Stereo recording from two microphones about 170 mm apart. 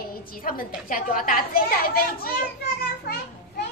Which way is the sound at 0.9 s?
55° left (ahead or behind).